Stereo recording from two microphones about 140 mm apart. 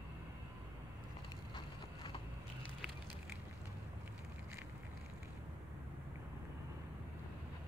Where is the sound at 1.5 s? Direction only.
35° left (ahead or behind).